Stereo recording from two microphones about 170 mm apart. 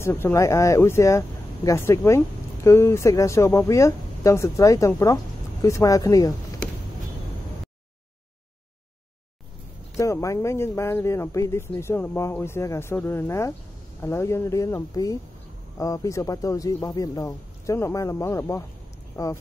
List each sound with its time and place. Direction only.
0.0 s speech: 15° left (ahead or behind)
9.9 s speech: 15° left (ahead or behind)